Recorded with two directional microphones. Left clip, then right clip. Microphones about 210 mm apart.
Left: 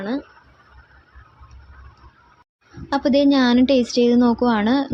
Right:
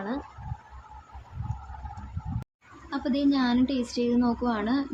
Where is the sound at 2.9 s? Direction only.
35° left (ahead or behind).